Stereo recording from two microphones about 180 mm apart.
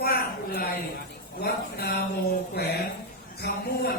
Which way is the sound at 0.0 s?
60° left (ahead or behind).